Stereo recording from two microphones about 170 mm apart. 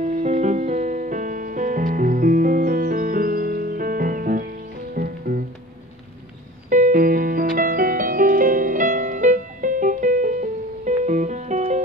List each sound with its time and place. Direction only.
0.0 s music: 40° right (ahead or behind); by 5.4 s 60° right (ahead or behind)
6.7 s music: 50° right (ahead or behind)